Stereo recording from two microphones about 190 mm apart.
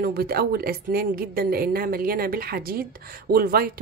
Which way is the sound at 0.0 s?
55° right (ahead or behind).